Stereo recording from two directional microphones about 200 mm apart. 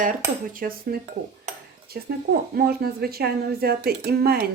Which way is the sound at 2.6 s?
50° right (ahead or behind).